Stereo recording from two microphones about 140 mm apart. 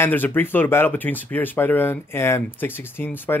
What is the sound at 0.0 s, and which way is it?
Speech, 15° left (ahead or behind).